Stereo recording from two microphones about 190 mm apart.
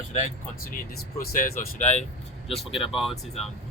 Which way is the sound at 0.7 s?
50° left (ahead or behind).